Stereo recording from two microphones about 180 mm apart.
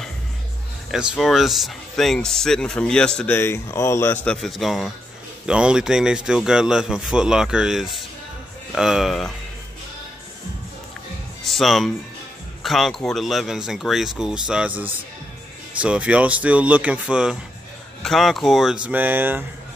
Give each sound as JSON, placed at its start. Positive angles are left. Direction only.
{"t": 0.9, "sound": "a man's voice", "side_deg": -5}
{"t": 11.4, "sound": "a man's voice", "side_deg": 0}